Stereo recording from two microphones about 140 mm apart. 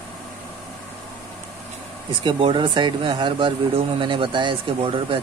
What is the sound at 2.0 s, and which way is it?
Speech, 40° right (ahead or behind).